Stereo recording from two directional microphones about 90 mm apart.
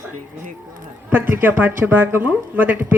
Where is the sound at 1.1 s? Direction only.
20° right (ahead or behind).